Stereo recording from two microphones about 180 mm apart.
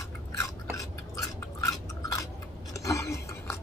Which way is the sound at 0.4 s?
15° left (ahead or behind).